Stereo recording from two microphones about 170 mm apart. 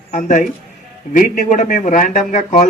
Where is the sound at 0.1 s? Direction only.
45° left (ahead or behind).